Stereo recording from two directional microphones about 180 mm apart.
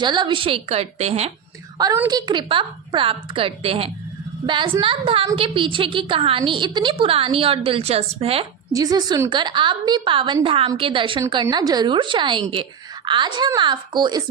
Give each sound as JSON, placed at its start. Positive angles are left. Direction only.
{"t": 0.0, "sound": "a woman's voice", "side_deg": -25}
{"t": 1.8, "sound": "a woman's voice", "side_deg": -20}
{"t": 8.7, "sound": "a woman's voice", "side_deg": -20}